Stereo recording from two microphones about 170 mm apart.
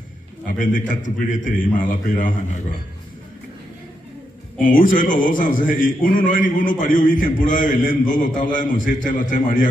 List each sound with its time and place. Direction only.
0.6 s a man's voice: 50° left (ahead or behind)
4.6 s a man's voice: 50° left (ahead or behind)